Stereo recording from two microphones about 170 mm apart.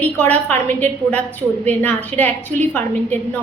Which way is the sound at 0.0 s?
10° left (ahead or behind).